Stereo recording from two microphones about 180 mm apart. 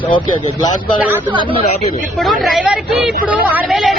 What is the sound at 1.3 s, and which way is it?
Speech, 25° right (ahead or behind).